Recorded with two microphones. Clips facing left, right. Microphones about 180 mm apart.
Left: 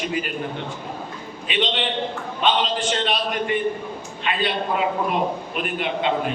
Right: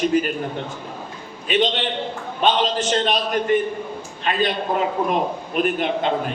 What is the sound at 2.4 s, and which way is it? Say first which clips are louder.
A man's voice: right 2 dB; 40° right (ahead or behind).